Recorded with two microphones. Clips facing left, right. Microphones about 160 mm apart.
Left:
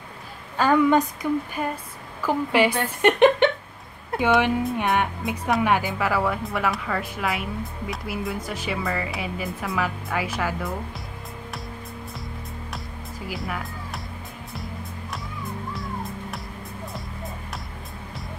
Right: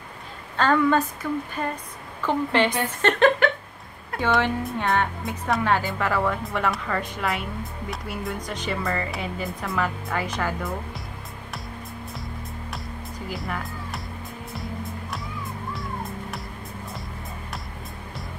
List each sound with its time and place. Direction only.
0.6 s a woman's voice: 15° left (ahead or behind)
4.7 s a woman's voice: 15° left (ahead or behind)
13.3 s speech: centre (ahead or behind)
14.5 s music: centre (ahead or behind)